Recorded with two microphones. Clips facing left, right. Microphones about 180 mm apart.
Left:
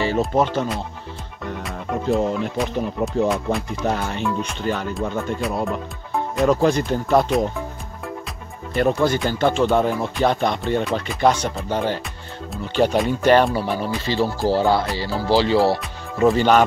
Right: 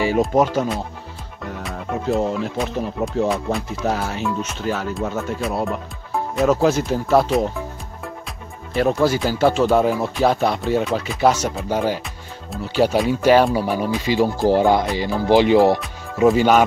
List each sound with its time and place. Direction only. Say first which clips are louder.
0.0 s speech: right 2 dB; 10° right (ahead or behind)
8.7 s speech: right 1 dB; centre (ahead or behind)